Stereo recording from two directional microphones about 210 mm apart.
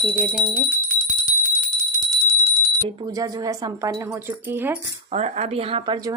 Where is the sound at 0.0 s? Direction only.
5° left (ahead or behind).